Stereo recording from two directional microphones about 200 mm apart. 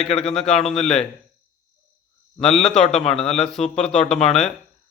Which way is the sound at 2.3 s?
5° left (ahead or behind).